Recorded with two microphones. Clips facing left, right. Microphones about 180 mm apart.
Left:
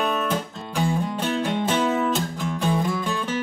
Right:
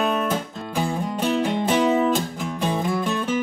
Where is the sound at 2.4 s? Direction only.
5° right (ahead or behind).